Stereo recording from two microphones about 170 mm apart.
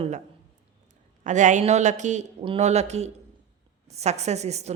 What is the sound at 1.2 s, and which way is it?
A woman's voice, 45° right (ahead or behind).